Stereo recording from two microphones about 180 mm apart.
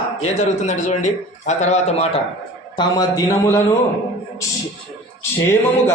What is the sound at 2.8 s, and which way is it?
Speech, 25° left (ahead or behind).